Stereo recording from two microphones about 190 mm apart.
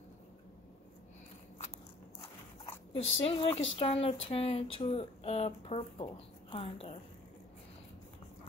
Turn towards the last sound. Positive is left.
turn(degrees=30)  # may be behind; listen again after turning